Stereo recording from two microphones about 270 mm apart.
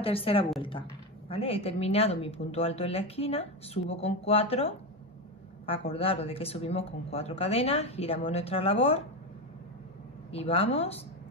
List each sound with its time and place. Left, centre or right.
0.0 s speech: left
10.3 s speech: left